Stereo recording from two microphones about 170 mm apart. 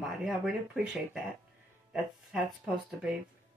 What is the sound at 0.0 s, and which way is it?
A woman's voice, centre (ahead or behind).